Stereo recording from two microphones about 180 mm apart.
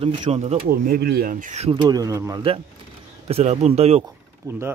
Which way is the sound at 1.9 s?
20° right (ahead or behind).